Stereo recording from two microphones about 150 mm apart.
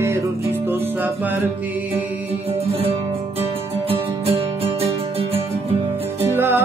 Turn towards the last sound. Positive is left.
turn(degrees=-15)  # may be behind; listen again after turning